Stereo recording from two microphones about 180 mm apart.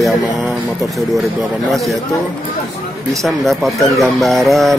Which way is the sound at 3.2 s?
Centre (ahead or behind).